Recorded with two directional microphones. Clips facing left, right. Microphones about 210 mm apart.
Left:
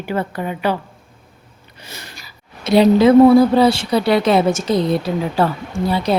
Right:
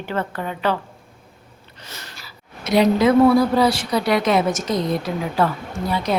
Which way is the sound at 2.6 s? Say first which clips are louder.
Left 5 dB; 30° left (ahead or behind).